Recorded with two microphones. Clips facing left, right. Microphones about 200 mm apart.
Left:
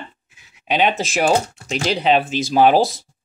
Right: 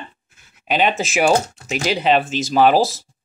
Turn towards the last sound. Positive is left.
turn(degrees=0)  # may be behind; listen again after turning